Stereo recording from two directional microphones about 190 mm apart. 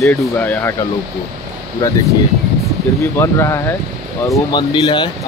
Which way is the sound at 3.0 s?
15° left (ahead or behind).